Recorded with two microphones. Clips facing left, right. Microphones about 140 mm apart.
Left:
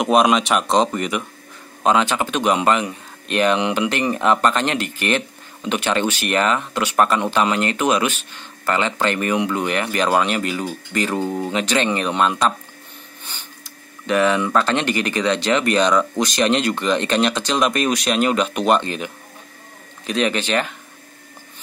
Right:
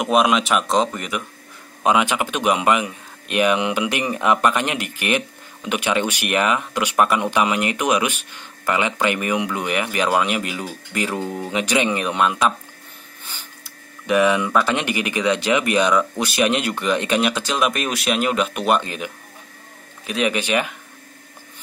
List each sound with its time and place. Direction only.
0.0 s speech: centre (ahead or behind)
11.1 s speech: 15° left (ahead or behind)
11.5 s speech: 10° right (ahead or behind)
14.0 s speech: 15° right (ahead or behind)